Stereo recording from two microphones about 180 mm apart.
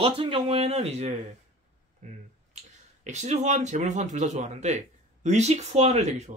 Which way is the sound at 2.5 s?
40° right (ahead or behind).